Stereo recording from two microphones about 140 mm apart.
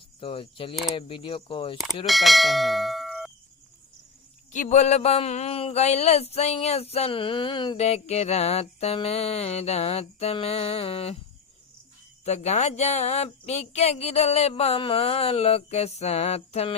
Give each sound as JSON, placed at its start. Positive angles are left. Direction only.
{"t": 0.2, "sound": "speech", "side_deg": 40}
{"t": 2.0, "sound": "speech", "side_deg": 0}
{"t": 4.5, "sound": "speech", "side_deg": 60}
{"t": 7.8, "sound": "speech", "side_deg": 50}
{"t": 12.2, "sound": "speech", "side_deg": 50}